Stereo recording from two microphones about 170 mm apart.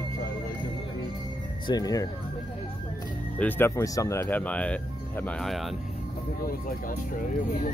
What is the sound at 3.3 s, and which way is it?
Speech, 10° left (ahead or behind).